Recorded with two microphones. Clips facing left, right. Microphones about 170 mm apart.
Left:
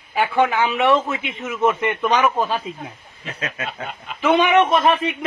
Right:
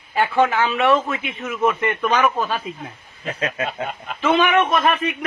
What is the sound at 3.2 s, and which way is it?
Snicker, 35° right (ahead or behind).